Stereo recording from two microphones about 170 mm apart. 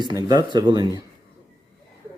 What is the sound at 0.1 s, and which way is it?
Speech, 25° right (ahead or behind).